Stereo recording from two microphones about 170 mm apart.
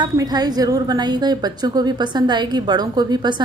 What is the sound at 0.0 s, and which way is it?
A woman's voice, 25° right (ahead or behind).